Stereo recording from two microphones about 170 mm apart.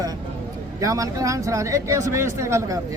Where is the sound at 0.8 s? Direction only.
20° right (ahead or behind).